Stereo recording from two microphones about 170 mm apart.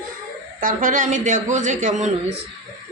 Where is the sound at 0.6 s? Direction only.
50° right (ahead or behind).